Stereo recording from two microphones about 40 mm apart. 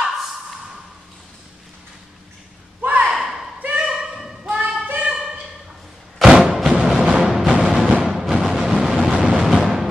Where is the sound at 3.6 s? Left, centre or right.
Right.